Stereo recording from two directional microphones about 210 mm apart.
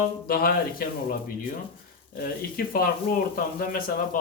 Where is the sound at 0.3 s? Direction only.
45° left (ahead or behind).